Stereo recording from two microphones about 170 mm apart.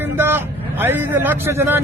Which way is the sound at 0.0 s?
15° right (ahead or behind).